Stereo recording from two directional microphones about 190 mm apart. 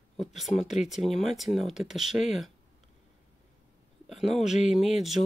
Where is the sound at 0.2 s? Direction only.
Centre (ahead or behind).